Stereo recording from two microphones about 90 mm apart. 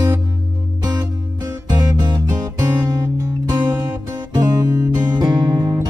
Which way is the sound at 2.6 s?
30° right (ahead or behind).